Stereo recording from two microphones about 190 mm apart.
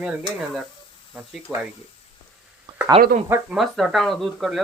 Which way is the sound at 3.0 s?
30° right (ahead or behind).